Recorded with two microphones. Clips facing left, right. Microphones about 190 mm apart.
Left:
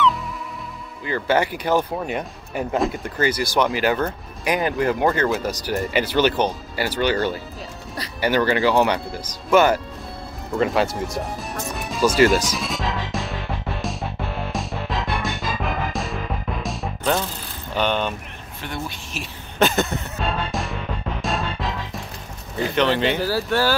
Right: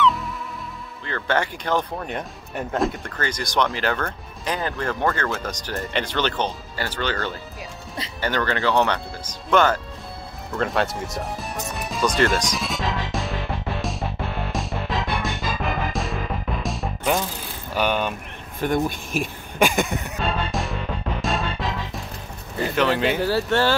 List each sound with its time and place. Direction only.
1.0 s speech: 10° left (ahead or behind)
11.7 s music: centre (ahead or behind)
17.7 s a sound: 10° right (ahead or behind)
18.6 s speech: 45° right (ahead or behind)
19.6 s a sound: 15° right (ahead or behind)
20.2 s music: centre (ahead or behind)
22.6 s speech: centre (ahead or behind)